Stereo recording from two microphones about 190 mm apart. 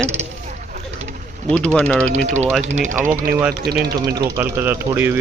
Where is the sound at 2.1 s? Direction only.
35° right (ahead or behind).